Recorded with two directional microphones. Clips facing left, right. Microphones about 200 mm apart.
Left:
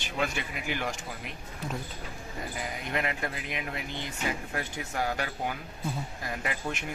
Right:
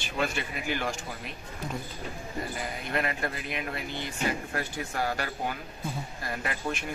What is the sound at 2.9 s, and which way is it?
Speech, 15° left (ahead or behind).